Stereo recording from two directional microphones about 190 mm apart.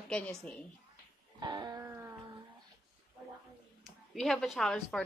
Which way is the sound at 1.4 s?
20° right (ahead or behind).